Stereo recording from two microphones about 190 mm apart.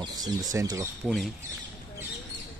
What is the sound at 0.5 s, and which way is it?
Speech, 15° right (ahead or behind).